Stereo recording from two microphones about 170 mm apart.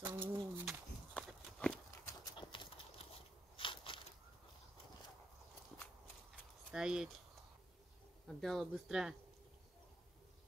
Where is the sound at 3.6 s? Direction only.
30° left (ahead or behind).